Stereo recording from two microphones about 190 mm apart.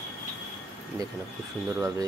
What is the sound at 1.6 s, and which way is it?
Speech, 15° right (ahead or behind).